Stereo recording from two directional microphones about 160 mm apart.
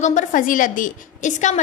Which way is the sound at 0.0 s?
50° left (ahead or behind).